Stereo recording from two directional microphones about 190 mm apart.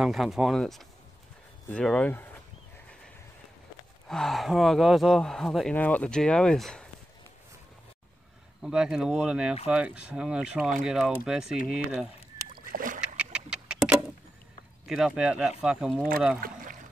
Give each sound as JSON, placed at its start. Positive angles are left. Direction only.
{"t": 0.0, "sound": "speech", "side_deg": 0}
{"t": 4.1, "sound": "speech", "side_deg": 0}
{"t": 8.6, "sound": "speech", "side_deg": -5}
{"t": 12.5, "sound": "splash", "side_deg": -50}
{"t": 13.0, "sound": "a sound", "side_deg": -5}
{"t": 14.9, "sound": "speech", "side_deg": -5}
{"t": 16.3, "sound": "speech", "side_deg": -50}